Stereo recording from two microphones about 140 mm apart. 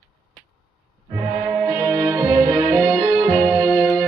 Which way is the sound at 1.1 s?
30° right (ahead or behind).